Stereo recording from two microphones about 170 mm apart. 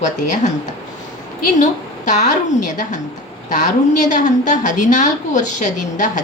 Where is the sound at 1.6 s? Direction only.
45° left (ahead or behind).